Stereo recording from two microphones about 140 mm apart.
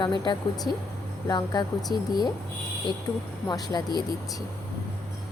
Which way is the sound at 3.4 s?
30° left (ahead or behind).